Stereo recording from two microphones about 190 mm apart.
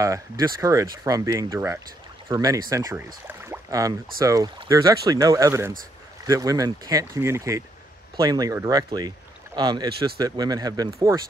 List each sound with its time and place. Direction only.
0.0 s speech: 15° right (ahead or behind)